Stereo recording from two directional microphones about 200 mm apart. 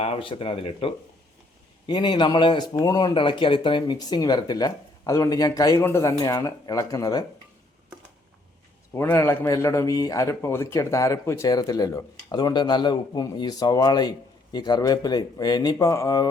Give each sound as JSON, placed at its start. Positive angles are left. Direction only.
{"t": 0.0, "sound": "speech", "side_deg": 30}
{"t": 8.9, "sound": "a man's voice", "side_deg": 10}